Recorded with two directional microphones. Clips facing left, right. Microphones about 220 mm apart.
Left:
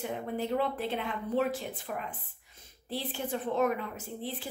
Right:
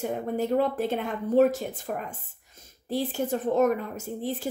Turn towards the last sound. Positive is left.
turn(degrees=-45)  # may be behind; listen again after turning